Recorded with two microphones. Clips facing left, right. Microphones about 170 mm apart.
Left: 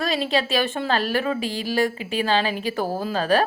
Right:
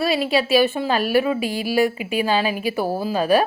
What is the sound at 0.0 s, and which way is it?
Speech, 10° right (ahead or behind).